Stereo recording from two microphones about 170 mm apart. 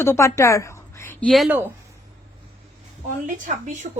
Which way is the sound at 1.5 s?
10° right (ahead or behind).